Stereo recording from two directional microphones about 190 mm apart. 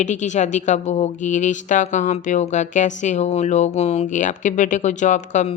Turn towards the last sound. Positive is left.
turn(degrees=40)  # may be behind; listen again after turning